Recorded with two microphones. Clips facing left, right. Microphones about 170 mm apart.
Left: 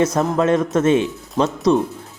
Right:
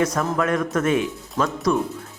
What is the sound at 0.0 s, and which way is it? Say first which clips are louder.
Speech: left 4 dB; 20° left (ahead or behind).